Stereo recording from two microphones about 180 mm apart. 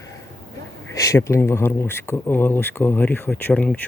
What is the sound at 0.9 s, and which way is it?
Speech, 20° left (ahead or behind).